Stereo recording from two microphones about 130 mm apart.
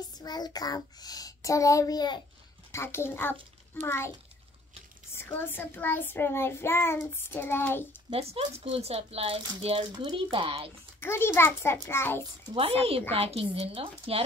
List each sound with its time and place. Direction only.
0.1 s a child's voice: 30° left (ahead or behind)
2.7 s a child's voice: 20° left (ahead or behind)
3.8 s child singing: 20° left (ahead or behind)
5.1 s child singing: 15° left (ahead or behind)
8.1 s speech: 50° right (ahead or behind)
11.0 s a child's voice: 20° left (ahead or behind)
13.1 s speech: 50° right (ahead or behind)